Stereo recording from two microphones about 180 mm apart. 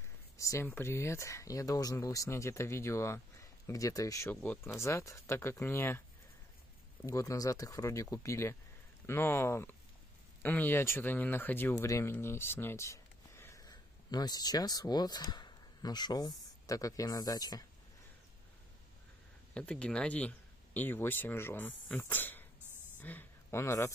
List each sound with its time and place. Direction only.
0.4 s speech: 15° left (ahead or behind)
7.1 s speech: 20° left (ahead or behind)
19.5 s speech: 5° left (ahead or behind)
22.9 s a sound: 10° left (ahead or behind)